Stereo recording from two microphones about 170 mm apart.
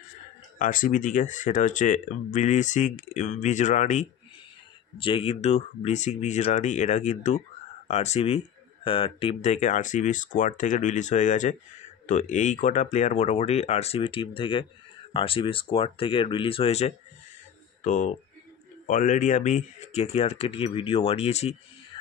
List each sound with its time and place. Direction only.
0.6 s speech: 50° left (ahead or behind)
4.9 s speech: 30° left (ahead or behind)
17.8 s speech: 50° left (ahead or behind)